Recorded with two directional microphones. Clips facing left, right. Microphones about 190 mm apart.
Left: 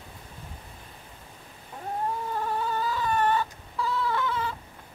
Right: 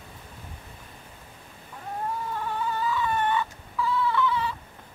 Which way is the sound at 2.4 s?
40° left (ahead or behind).